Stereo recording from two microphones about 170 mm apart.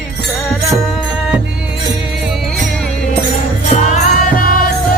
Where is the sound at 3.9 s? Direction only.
55° left (ahead or behind).